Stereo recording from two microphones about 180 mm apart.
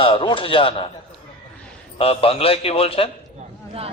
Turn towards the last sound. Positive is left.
turn(degrees=30)  # may be behind; listen again after turning